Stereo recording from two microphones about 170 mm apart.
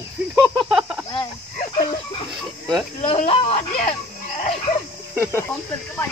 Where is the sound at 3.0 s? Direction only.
40° left (ahead or behind).